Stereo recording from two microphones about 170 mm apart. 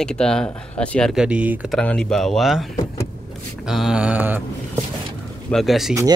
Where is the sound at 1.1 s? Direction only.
5° right (ahead or behind).